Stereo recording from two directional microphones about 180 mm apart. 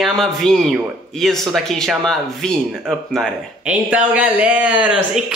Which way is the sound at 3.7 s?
10° right (ahead or behind).